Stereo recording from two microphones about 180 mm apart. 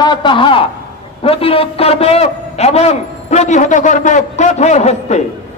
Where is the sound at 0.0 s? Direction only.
25° left (ahead or behind).